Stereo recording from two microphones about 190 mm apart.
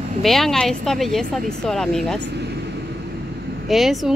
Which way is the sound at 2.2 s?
60° right (ahead or behind).